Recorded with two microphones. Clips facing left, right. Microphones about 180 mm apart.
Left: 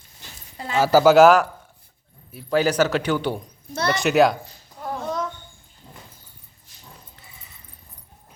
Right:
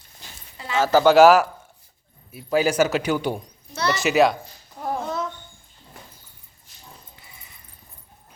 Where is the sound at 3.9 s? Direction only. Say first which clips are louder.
Left 1 dB; centre (ahead or behind).